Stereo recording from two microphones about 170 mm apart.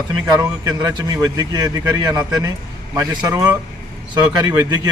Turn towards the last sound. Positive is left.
turn(degrees=-20)  # may be behind; listen again after turning